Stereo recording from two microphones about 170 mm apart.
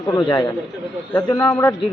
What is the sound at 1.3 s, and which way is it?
Speech, 15° left (ahead or behind).